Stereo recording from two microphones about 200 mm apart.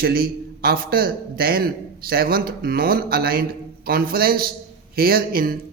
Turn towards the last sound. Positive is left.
turn(degrees=-45)  # may be behind; listen again after turning